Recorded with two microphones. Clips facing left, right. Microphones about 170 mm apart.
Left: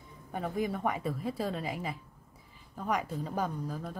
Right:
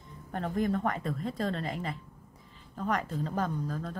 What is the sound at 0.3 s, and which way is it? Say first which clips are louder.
Speech: right 3 dB; 10° left (ahead or behind).